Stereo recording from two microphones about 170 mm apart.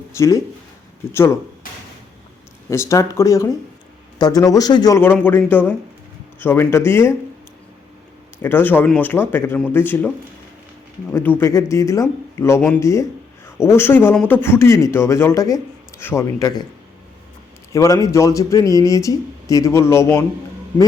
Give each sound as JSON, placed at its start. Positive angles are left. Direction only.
{"t": 0.1, "sound": "speech", "side_deg": 20}
{"t": 2.6, "sound": "speech", "side_deg": 15}
{"t": 5.1, "sound": "speech", "side_deg": 10}
{"t": 8.4, "sound": "speech", "side_deg": 10}
{"t": 11.3, "sound": "speech", "side_deg": 15}
{"t": 17.7, "sound": "speech", "side_deg": 20}